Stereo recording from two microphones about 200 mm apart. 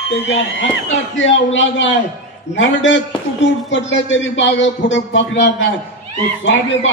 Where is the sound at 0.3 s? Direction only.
65° left (ahead or behind).